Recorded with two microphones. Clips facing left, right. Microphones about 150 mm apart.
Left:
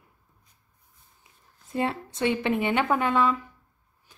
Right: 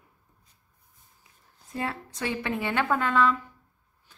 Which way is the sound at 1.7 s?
25° left (ahead or behind).